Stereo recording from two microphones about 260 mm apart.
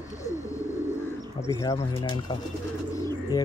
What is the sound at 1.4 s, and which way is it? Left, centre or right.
Speech, centre.